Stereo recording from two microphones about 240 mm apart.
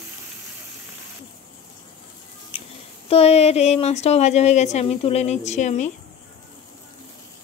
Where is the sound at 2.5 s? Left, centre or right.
Left.